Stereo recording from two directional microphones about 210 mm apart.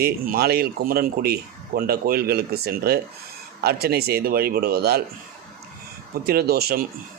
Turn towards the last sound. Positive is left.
turn(degrees=-45)  # may be behind; listen again after turning